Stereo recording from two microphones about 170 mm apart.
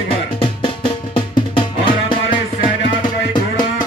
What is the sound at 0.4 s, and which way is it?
Music, 30° left (ahead or behind).